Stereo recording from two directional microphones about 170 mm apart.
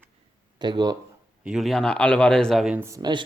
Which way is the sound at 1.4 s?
Centre (ahead or behind).